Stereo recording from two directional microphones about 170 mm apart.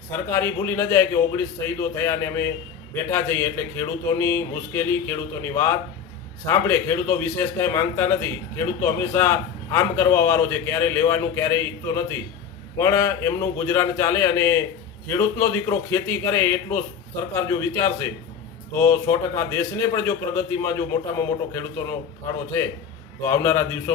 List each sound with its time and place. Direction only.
0.3 s a man's voice: 15° left (ahead or behind)
23.2 s a man's voice: 15° left (ahead or behind)